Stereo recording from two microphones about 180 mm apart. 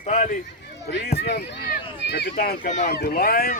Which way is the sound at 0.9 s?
70° left (ahead or behind).